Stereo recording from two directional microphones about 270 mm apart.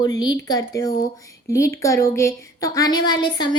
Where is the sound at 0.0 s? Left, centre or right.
Centre.